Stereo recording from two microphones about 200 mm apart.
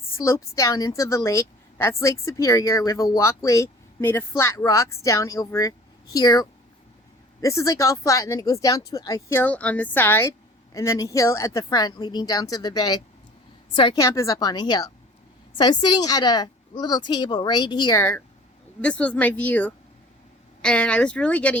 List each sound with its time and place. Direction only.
0.2 s a woman's voice: 15° left (ahead or behind)